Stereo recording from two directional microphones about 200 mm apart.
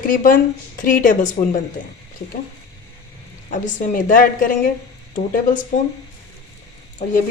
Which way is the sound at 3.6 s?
40° left (ahead or behind).